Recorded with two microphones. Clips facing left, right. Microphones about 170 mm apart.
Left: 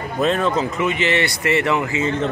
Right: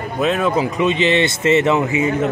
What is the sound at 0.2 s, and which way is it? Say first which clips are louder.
Speech: right 1 dB; 5° right (ahead or behind).